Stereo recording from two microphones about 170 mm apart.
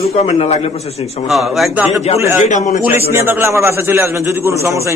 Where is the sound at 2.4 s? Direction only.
45° left (ahead or behind).